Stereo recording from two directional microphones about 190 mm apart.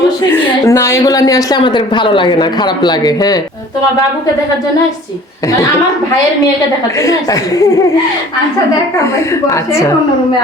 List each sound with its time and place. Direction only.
0.3 s a woman's voice: 15° left (ahead or behind)
7.0 s a woman's voice: 20° left (ahead or behind)
9.0 s a woman's voice: 15° left (ahead or behind)